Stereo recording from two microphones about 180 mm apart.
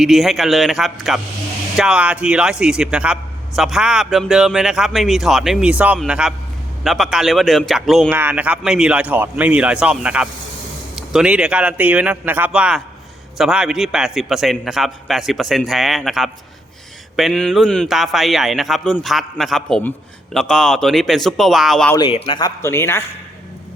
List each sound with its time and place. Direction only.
0.0 s a man's voice: centre (ahead or behind)
21.9 s speech: 25° left (ahead or behind)